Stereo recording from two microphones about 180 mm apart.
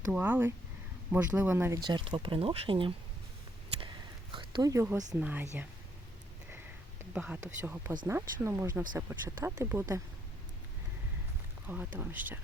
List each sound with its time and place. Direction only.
0.1 s speech: 10° right (ahead or behind)
1.8 s speech: 25° right (ahead or behind)
3.8 s a sound: 30° right (ahead or behind)
5.2 s speech: 10° right (ahead or behind)
7.0 s speech: 10° right (ahead or behind)
11.9 s speech: 10° right (ahead or behind)